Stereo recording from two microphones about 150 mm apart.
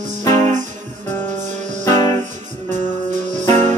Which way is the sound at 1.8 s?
25° left (ahead or behind).